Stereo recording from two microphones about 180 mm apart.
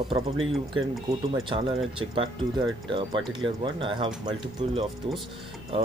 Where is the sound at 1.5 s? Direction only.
30° right (ahead or behind).